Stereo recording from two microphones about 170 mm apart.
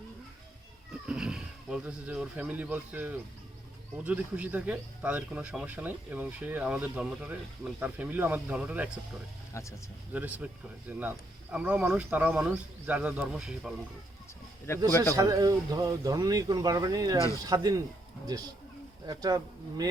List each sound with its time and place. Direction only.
1.0 s speech: 5° right (ahead or behind)
10.1 s speech: 10° right (ahead or behind)
14.7 s speech: 15° left (ahead or behind)
15.1 s speech: 20° right (ahead or behind)
19.0 s speech: 25° right (ahead or behind)